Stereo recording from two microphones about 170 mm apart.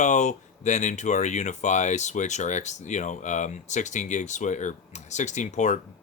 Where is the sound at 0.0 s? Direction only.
45° left (ahead or behind).